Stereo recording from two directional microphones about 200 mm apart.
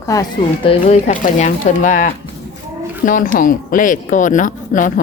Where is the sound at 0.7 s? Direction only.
35° left (ahead or behind).